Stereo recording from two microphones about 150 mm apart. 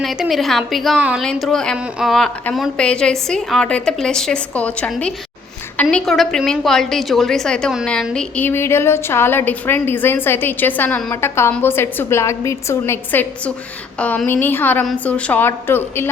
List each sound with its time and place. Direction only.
0.0 s a woman's voice: centre (ahead or behind); by 16.0 s 15° left (ahead or behind)